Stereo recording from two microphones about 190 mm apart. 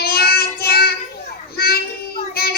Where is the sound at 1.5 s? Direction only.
55° left (ahead or behind).